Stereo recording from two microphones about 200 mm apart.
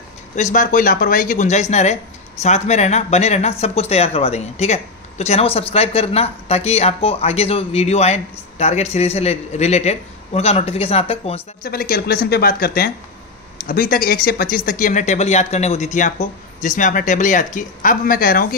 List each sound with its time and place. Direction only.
0.4 s speech: 40° left (ahead or behind)
11.6 s a woman's voice: 45° left (ahead or behind)